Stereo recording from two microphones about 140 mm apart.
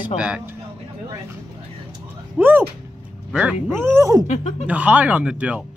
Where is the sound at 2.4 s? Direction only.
15° right (ahead or behind).